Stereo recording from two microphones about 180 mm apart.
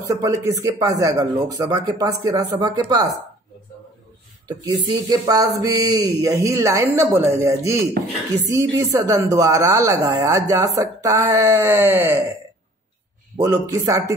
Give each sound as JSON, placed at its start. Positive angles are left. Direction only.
{"t": 0.0, "sound": "speech", "side_deg": -20}
{"t": 4.5, "sound": "a woman's voice", "side_deg": -20}
{"t": 13.4, "sound": "a woman's voice", "side_deg": -15}